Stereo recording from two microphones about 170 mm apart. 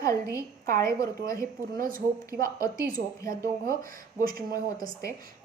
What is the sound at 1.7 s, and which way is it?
Speech, 55° right (ahead or behind).